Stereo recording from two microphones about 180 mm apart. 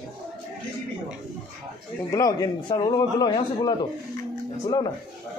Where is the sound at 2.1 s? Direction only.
20° left (ahead or behind).